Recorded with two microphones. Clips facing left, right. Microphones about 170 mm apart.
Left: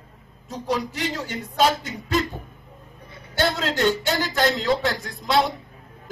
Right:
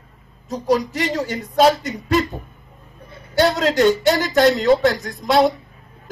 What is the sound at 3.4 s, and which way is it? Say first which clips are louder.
Speech: right 6 dB; 40° right (ahead or behind).